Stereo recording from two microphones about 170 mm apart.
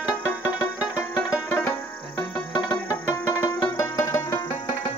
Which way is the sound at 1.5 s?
10° left (ahead or behind).